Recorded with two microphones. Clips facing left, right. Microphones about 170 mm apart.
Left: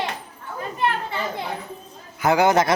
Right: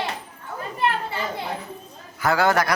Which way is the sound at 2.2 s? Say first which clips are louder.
Left 3 dB; 20° left (ahead or behind).